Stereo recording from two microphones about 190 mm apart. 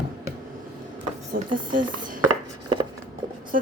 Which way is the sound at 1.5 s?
45° right (ahead or behind).